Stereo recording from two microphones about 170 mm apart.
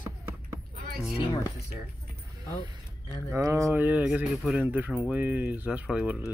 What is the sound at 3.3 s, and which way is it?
Speech, 15° right (ahead or behind).